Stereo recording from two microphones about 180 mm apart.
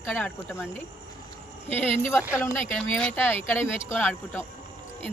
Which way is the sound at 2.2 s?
5° right (ahead or behind).